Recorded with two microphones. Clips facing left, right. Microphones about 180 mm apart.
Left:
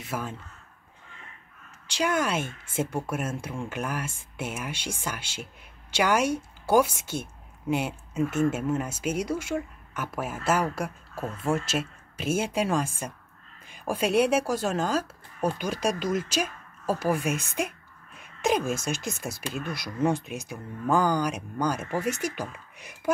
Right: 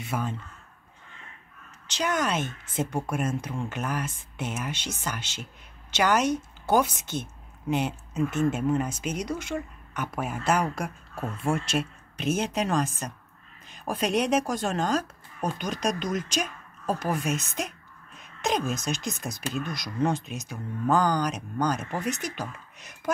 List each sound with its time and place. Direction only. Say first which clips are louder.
0.0 s speech: right 2 dB; 5° left (ahead or behind)
1.9 s speech: left 1 dB; 10° left (ahead or behind)
18.2 s a sound: left 2 dB; 10° left (ahead or behind)
18.8 s speech: even; 10° left (ahead or behind)